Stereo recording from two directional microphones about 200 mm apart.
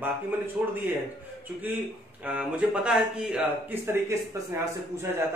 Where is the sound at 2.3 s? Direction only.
5° right (ahead or behind).